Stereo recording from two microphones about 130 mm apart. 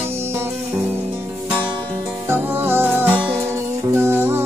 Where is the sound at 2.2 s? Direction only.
15° right (ahead or behind).